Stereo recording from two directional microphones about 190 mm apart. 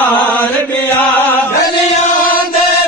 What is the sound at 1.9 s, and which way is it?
Chant, 40° left (ahead or behind).